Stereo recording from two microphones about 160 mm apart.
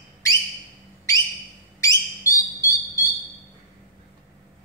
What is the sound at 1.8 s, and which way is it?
Bird, 20° left (ahead or behind).